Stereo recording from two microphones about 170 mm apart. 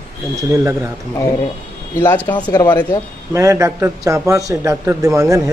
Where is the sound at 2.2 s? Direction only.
25° left (ahead or behind).